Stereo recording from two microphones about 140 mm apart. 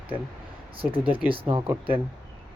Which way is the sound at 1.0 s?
10° right (ahead or behind).